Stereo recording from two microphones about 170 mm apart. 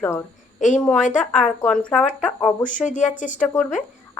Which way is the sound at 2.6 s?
50° left (ahead or behind).